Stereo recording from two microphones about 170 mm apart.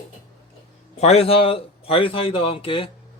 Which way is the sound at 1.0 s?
40° left (ahead or behind).